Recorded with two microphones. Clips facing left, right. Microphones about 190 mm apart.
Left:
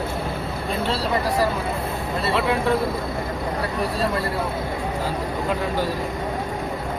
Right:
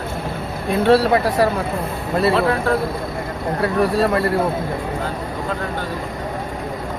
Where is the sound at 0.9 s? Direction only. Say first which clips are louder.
Right 10 dB; 65° right (ahead or behind).